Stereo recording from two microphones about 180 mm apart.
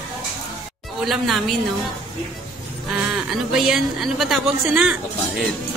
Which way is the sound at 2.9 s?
5° right (ahead or behind).